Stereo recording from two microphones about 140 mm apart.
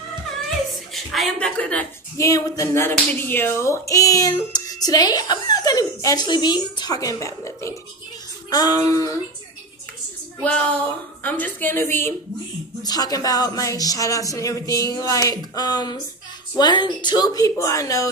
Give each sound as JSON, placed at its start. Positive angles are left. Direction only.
{"t": 0.9, "sound": "a woman's voice", "side_deg": 0}
{"t": 2.1, "sound": "speech", "side_deg": 25}
{"t": 11.2, "sound": "a woman's voice", "side_deg": 10}
{"t": 12.8, "sound": "speech", "side_deg": 30}